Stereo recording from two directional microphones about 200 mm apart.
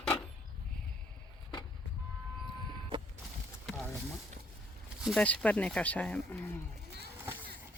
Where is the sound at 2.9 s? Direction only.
25° right (ahead or behind).